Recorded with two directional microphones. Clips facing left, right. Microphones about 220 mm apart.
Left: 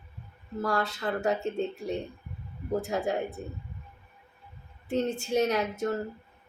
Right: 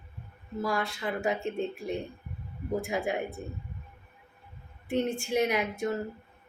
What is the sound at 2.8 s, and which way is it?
Speech, 10° right (ahead or behind).